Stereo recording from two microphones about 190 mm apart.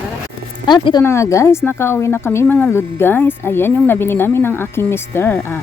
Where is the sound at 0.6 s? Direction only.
25° left (ahead or behind).